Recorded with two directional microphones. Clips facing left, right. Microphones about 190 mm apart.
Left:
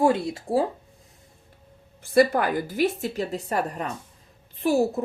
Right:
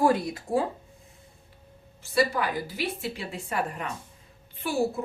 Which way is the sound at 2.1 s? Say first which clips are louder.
Left 6 dB; 50° left (ahead or behind).